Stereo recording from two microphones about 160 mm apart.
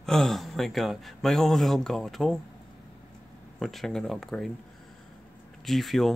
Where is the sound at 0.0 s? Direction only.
Centre (ahead or behind).